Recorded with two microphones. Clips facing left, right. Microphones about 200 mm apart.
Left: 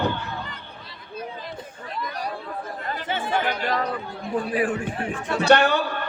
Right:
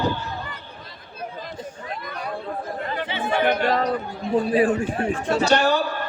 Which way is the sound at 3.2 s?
60° right (ahead or behind).